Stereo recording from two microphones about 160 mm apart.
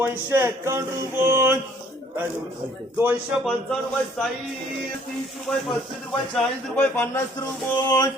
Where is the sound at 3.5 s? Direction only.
5° left (ahead or behind).